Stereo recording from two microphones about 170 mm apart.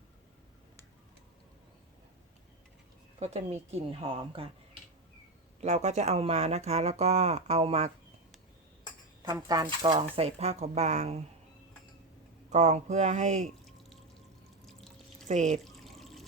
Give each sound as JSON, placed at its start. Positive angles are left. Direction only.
{"t": 3.2, "sound": "speech", "side_deg": -40}
{"t": 5.5, "sound": "speech", "side_deg": -40}
{"t": 9.2, "sound": "speech", "side_deg": -25}
{"t": 12.5, "sound": "speech", "side_deg": -40}
{"t": 14.7, "sound": "drip", "side_deg": 0}
{"t": 15.3, "sound": "speech", "side_deg": -45}
{"t": 15.6, "sound": "water", "side_deg": 0}